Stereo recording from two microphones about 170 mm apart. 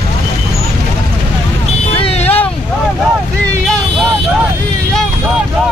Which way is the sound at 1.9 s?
35° left (ahead or behind).